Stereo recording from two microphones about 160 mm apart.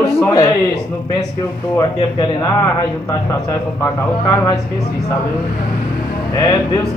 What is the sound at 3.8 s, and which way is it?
Speech, 20° left (ahead or behind).